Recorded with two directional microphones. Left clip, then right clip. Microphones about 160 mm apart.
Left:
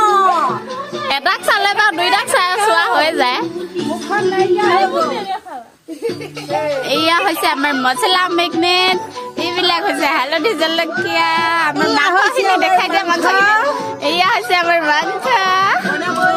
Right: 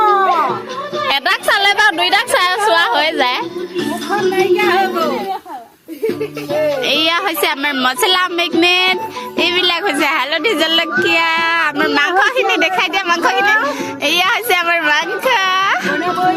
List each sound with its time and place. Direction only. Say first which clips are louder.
1.0 s a sound: even; centre (ahead or behind)
3.8 s music: even; 10° right (ahead or behind)
6.8 s a woman's voice: even; 15° right (ahead or behind)
13.3 s a child's voice: left 3 dB; 20° left (ahead or behind)
14.0 s speech: right 1 dB; 20° right (ahead or behind)